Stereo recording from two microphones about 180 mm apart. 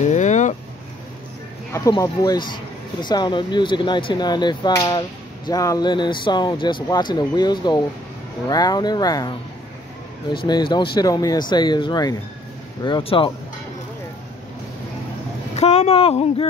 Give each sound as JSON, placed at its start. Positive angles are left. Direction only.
{"t": 0.0, "sound": "a sound", "side_deg": 40}
{"t": 1.7, "sound": "speech", "side_deg": 20}
{"t": 10.3, "sound": "speech", "side_deg": 25}
{"t": 15.5, "sound": "speech", "side_deg": 35}